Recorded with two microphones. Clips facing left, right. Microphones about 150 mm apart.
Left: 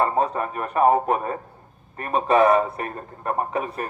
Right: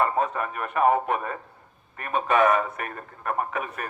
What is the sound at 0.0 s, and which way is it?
A man's voice, 35° left (ahead or behind).